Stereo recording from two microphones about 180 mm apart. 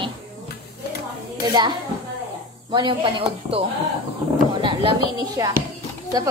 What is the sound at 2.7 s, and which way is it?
Speech, 25° right (ahead or behind).